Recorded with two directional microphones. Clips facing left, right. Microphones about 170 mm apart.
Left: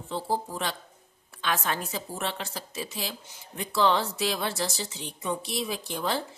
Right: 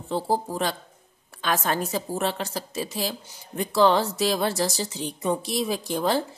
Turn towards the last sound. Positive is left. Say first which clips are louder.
# right 6 dB
turn(degrees=-40)  # may be behind; listen again after turning